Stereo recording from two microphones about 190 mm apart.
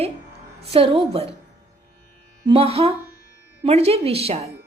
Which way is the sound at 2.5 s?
30° right (ahead or behind).